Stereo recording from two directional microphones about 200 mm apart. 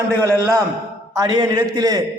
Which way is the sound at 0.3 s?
15° right (ahead or behind).